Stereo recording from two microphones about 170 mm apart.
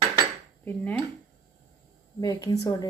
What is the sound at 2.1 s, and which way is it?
Speech, 20° left (ahead or behind).